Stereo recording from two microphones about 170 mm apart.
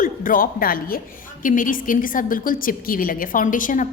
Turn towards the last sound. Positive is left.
turn(degrees=50)  # may be behind; listen again after turning